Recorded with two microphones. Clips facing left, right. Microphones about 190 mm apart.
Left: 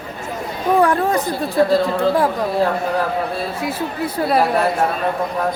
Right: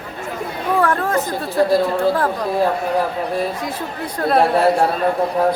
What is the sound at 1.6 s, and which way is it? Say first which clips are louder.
Speech: even; 10° right (ahead or behind).